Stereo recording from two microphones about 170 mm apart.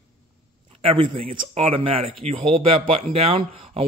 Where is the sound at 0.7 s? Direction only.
35° right (ahead or behind).